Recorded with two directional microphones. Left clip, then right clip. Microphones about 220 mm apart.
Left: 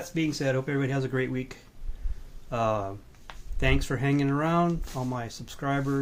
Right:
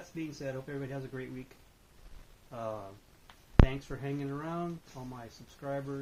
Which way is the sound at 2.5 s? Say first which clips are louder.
Left 12 dB; 35° left (ahead or behind).